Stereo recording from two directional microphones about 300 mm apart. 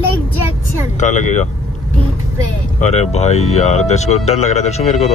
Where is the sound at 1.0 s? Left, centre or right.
Left.